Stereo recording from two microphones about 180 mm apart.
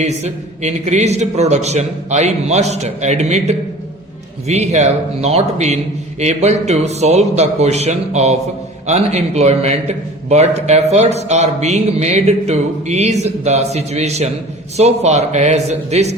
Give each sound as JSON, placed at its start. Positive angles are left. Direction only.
{"t": 0.0, "sound": "a man's voice", "side_deg": -40}